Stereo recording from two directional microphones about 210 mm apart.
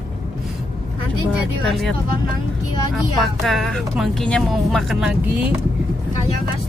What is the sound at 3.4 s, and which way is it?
Speech, centre (ahead or behind).